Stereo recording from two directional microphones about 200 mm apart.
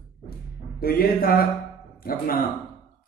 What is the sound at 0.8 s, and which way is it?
A man's voice, 50° left (ahead or behind).